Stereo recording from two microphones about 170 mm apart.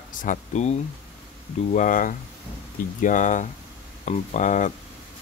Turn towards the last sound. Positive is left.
turn(degrees=45)  # may be behind; listen again after turning